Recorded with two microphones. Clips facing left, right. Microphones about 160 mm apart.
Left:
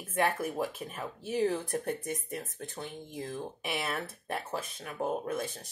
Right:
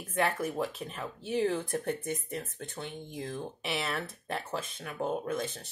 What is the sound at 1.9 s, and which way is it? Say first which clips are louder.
Speech: right 1 dB; 40° left (ahead or behind).